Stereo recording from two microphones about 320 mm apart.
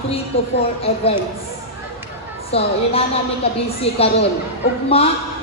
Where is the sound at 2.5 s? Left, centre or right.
Centre.